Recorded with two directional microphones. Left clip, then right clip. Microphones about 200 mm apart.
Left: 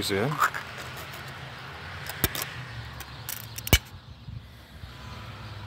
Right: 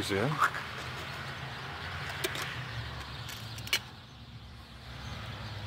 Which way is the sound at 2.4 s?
40° left (ahead or behind).